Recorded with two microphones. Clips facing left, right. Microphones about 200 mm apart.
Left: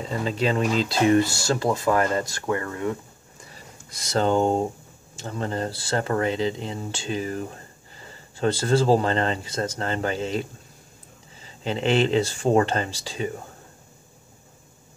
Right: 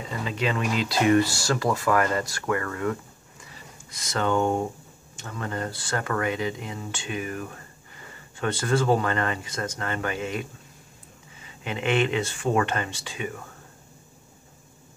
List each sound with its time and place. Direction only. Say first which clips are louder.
0.1 s speech: left 4 dB; 35° left (ahead or behind)
3.9 s speech: left 3 dB; 35° left (ahead or behind)
11.4 s speech: left 4 dB; 30° left (ahead or behind)